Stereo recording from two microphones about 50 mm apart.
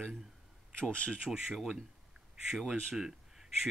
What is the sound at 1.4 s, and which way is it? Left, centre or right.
Speech, centre.